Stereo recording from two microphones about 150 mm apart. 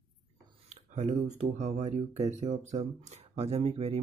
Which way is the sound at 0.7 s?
50° right (ahead or behind).